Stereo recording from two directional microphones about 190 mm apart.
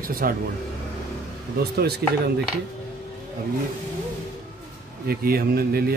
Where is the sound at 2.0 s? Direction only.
55° right (ahead or behind).